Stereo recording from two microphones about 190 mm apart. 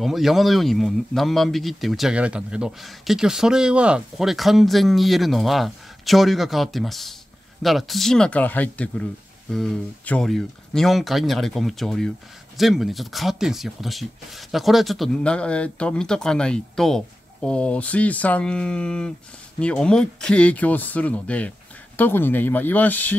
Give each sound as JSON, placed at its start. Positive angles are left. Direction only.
{"t": 0.0, "sound": "speech", "side_deg": 0}